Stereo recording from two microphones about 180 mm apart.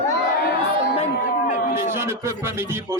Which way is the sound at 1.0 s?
45° left (ahead or behind).